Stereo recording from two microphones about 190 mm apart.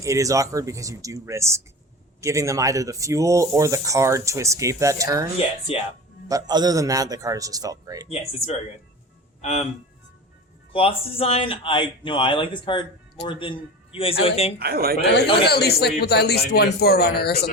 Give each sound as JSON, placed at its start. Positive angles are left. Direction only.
{"t": 0.0, "sound": "speech", "side_deg": -15}
{"t": 5.7, "sound": "speech", "side_deg": 30}
{"t": 6.2, "sound": "a man's voice", "side_deg": -20}
{"t": 8.0, "sound": "speech", "side_deg": 35}
{"t": 10.7, "sound": "speech", "side_deg": 30}
{"t": 13.9, "sound": "speech", "side_deg": 30}
{"t": 14.6, "sound": "speech", "side_deg": -50}
{"t": 15.4, "sound": "a man's voice", "side_deg": 55}